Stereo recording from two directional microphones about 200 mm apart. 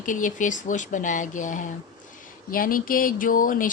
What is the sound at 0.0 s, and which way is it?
Speech, 40° left (ahead or behind).